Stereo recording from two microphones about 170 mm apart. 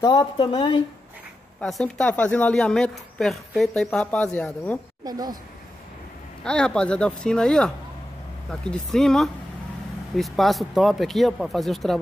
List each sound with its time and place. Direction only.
0.0 s speech: 30° left (ahead or behind)
1.6 s speech: 5° left (ahead or behind)
5.0 s a woman's voice: 20° right (ahead or behind)
6.4 s speech: 5° left (ahead or behind)